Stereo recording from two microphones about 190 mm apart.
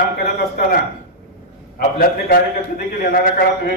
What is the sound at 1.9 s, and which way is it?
A man's voice, 50° left (ahead or behind).